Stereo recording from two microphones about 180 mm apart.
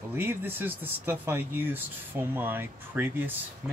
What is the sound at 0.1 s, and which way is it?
Speech, 10° right (ahead or behind).